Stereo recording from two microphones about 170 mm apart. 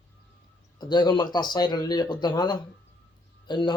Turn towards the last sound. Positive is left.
turn(degrees=25)  # may be behind; listen again after turning